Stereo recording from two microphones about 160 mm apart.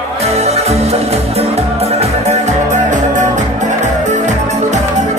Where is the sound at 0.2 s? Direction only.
40° right (ahead or behind).